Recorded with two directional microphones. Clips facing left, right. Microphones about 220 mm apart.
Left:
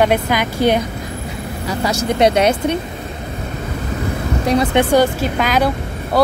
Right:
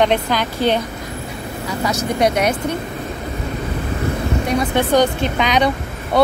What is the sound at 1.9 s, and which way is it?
Speech, 25° left (ahead or behind).